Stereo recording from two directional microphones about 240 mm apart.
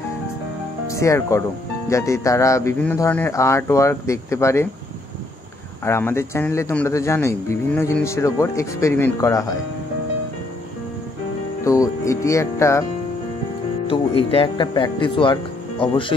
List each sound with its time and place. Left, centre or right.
0.8 s speech: centre
5.9 s speech: centre
11.6 s speech: centre
13.8 s speech: left